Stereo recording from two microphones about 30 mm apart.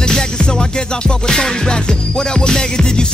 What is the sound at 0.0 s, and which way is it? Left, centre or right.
Music, left.